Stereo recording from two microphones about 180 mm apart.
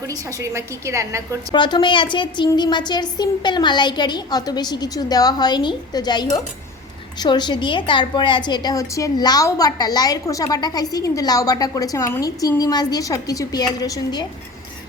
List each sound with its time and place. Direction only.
0.1 s a woman's voice: 15° right (ahead or behind)
1.5 s a woman's voice: 25° left (ahead or behind)